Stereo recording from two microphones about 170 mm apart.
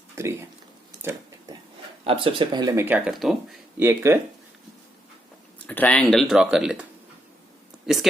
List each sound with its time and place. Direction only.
0.2 s speech: 15° right (ahead or behind)
2.0 s speech: 30° right (ahead or behind); by 3.3 s centre (ahead or behind)
3.8 s speech: 15° right (ahead or behind)
5.6 s speech: 10° left (ahead or behind)